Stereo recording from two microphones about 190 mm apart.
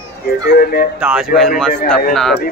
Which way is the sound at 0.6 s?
50° left (ahead or behind).